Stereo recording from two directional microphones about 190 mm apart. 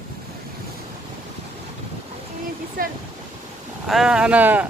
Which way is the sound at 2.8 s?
50° right (ahead or behind).